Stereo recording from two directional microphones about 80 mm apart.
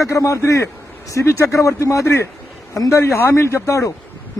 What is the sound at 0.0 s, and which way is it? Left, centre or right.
A man's voice, left.